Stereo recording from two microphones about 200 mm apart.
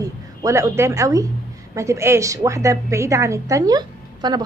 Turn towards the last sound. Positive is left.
turn(degrees=-20)  # may be behind; listen again after turning